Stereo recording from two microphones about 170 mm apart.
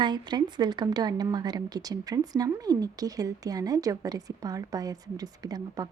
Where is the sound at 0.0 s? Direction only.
25° right (ahead or behind).